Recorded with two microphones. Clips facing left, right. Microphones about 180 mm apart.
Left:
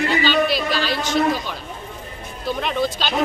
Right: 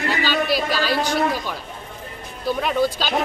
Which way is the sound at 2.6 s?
5° right (ahead or behind).